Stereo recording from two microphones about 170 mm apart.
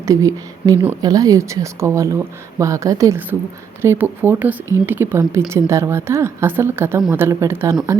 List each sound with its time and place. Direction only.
0.0 s speech: 20° right (ahead or behind)